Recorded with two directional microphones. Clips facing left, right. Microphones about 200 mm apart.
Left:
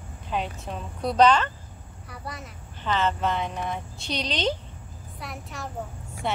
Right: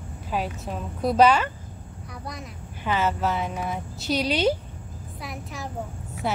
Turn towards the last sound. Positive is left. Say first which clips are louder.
# right 1 dB
turn(degrees=-5)  # may be behind; listen again after turning